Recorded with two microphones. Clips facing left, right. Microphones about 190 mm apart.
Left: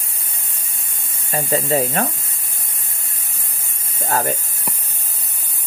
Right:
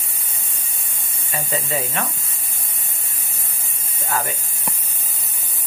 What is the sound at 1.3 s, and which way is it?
Speech, 35° left (ahead or behind).